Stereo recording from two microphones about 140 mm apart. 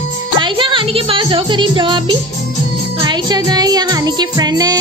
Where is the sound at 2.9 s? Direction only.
30° right (ahead or behind).